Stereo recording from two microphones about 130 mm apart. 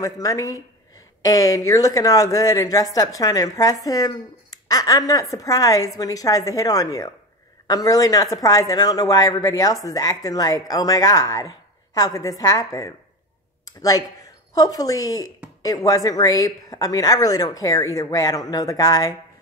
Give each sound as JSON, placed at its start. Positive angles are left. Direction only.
{"t": 0.0, "sound": "a woman's voice", "side_deg": 25}